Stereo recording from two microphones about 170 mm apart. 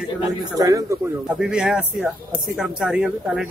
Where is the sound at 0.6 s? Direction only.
20° right (ahead or behind).